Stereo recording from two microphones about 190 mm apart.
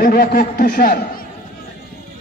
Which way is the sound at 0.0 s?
55° left (ahead or behind).